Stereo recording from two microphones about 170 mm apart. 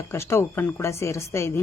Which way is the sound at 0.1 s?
15° left (ahead or behind).